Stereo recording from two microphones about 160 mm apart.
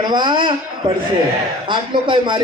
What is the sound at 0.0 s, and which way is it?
Speech, 30° right (ahead or behind).